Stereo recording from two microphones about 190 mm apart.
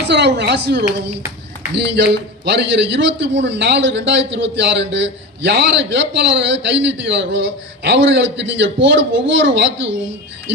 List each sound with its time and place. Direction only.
0.1 s a man's voice: 65° right (ahead or behind)